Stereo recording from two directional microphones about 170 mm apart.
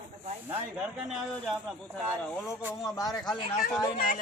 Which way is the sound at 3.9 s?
60° left (ahead or behind).